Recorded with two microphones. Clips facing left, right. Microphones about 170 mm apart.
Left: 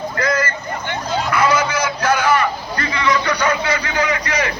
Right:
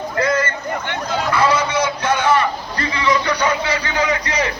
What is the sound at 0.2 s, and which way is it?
Vehicle, 25° right (ahead or behind).